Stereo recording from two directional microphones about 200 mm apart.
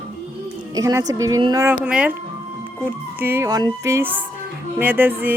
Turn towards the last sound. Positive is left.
turn(degrees=-10)  # may be behind; listen again after turning